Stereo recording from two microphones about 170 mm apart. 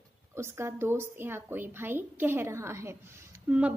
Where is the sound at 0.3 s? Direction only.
15° right (ahead or behind).